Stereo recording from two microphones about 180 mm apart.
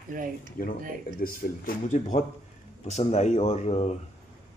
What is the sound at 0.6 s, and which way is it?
Speech, 50° left (ahead or behind).